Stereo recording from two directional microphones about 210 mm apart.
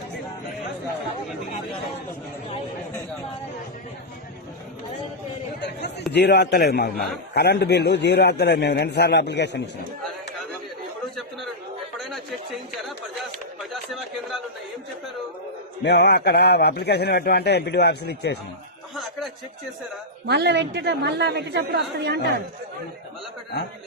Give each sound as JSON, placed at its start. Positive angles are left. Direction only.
{"t": 5.5, "sound": "chatter", "side_deg": 55}
{"t": 6.1, "sound": "a man's voice", "side_deg": 50}
{"t": 11.9, "sound": "a sound", "side_deg": 0}
{"t": 13.6, "sound": "speech", "side_deg": 0}
{"t": 15.8, "sound": "a man's voice", "side_deg": 50}
{"t": 20.2, "sound": "a woman's voice", "side_deg": -55}